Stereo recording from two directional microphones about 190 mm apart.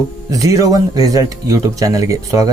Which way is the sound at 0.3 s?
15° right (ahead or behind).